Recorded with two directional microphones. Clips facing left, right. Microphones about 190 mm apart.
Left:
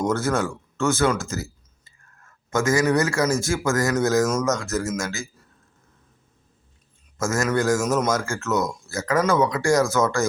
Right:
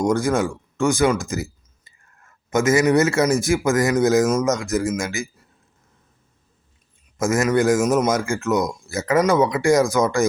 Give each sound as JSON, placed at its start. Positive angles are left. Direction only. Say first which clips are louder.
{"t": 0.0, "sound": "speech", "louder": "right 3 dB", "side_deg": -15}
{"t": 7.2, "sound": "a man's voice", "louder": "right 4 dB", "side_deg": -15}